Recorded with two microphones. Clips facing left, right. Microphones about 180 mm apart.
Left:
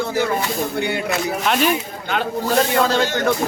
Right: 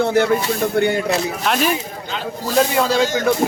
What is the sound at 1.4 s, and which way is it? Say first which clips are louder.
Speech: left 2 dB; centre (ahead or behind).